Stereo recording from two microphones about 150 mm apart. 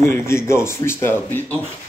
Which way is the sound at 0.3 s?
15° left (ahead or behind).